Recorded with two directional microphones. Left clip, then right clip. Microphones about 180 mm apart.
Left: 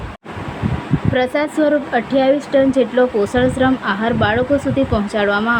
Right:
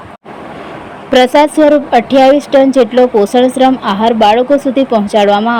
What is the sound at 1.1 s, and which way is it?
A woman's voice, 35° right (ahead or behind).